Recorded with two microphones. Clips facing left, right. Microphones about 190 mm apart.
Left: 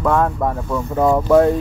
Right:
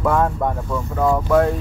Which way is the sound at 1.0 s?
15° left (ahead or behind).